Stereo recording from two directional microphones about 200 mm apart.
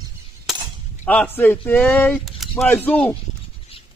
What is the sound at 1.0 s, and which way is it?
A man's voice, 5° left (ahead or behind).